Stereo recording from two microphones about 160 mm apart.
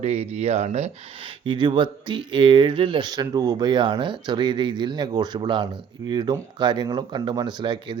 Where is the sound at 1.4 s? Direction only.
30° right (ahead or behind).